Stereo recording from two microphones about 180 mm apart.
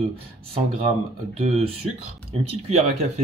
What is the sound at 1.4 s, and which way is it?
Speech, 35° right (ahead or behind).